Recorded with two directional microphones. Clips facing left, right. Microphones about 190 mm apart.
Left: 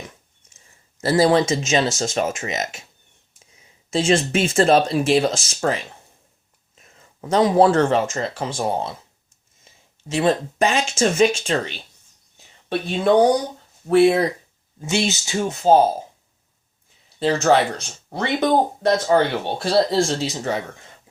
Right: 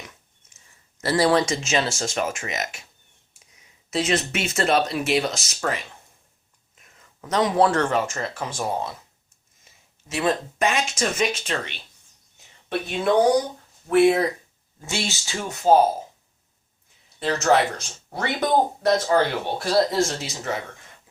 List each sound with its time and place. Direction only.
1.0 s speech: 25° left (ahead or behind)
3.8 s speech: 30° left (ahead or behind)
6.8 s speech: 30° left (ahead or behind)
10.1 s speech: 30° left (ahead or behind)
14.8 s speech: 20° left (ahead or behind)
17.2 s speech: 30° left (ahead or behind)